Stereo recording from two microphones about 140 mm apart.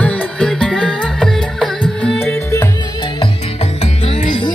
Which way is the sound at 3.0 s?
40° left (ahead or behind).